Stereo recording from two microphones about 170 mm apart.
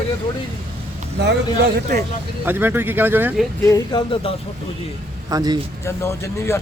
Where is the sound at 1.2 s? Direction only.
70° right (ahead or behind).